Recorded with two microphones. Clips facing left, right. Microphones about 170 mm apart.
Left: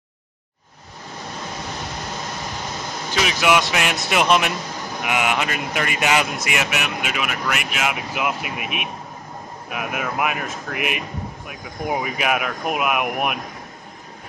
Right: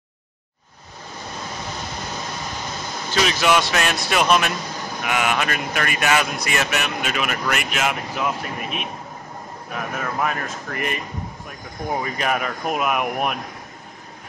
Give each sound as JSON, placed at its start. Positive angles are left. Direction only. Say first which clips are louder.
{"t": 3.2, "sound": "speech", "louder": "even", "side_deg": 10}
{"t": 6.6, "sound": "speech", "louder": "right 1 dB", "side_deg": 10}